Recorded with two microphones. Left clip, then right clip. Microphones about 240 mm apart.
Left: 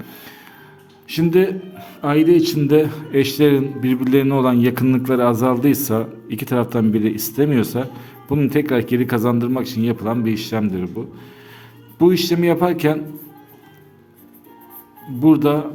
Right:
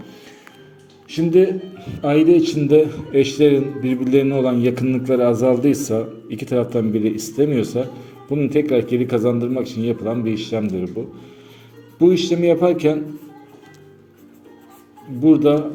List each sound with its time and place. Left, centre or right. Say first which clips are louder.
0.0 s music: left 2 dB; left
1.0 s a man's voice: right 1 dB; left
11.9 s a man's voice: even; left
15.2 s a man's voice: right 1 dB; left